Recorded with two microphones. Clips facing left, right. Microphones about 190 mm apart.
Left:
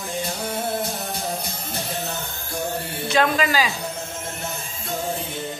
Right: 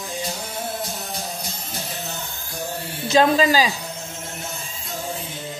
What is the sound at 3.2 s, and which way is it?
Speech, 30° right (ahead or behind).